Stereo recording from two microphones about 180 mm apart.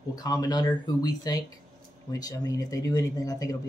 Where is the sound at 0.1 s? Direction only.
20° left (ahead or behind).